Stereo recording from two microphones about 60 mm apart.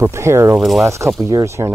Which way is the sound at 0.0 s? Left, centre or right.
Right.